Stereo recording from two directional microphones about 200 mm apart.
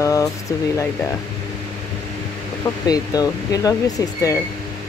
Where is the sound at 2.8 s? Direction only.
20° left (ahead or behind).